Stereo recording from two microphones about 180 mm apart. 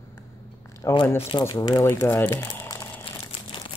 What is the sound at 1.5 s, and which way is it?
Crumpling, 20° left (ahead or behind).